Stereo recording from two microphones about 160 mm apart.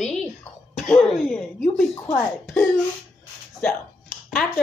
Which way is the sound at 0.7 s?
5° left (ahead or behind).